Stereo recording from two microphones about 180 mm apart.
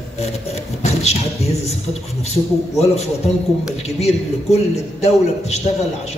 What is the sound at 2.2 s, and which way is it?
A man's voice, 35° left (ahead or behind).